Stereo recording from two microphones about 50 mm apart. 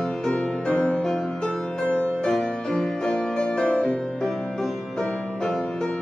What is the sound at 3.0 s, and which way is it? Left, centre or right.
Music, centre.